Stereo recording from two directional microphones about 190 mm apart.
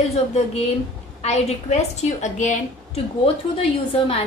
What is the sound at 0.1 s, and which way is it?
A woman's voice, 35° left (ahead or behind).